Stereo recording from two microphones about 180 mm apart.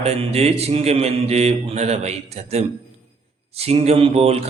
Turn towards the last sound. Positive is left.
turn(degrees=-35)  # may be behind; listen again after turning